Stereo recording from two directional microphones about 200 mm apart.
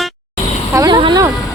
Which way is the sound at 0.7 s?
20° right (ahead or behind).